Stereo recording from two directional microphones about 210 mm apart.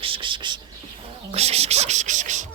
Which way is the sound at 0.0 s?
25° right (ahead or behind).